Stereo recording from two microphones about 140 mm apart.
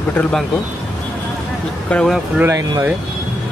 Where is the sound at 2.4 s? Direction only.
20° right (ahead or behind).